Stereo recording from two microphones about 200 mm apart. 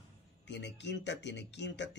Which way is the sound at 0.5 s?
60° left (ahead or behind).